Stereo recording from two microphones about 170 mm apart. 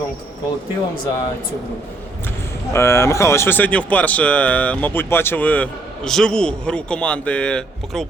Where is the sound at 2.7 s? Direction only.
15° left (ahead or behind).